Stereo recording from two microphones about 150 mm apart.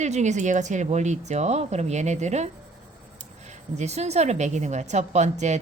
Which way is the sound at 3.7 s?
45° right (ahead or behind).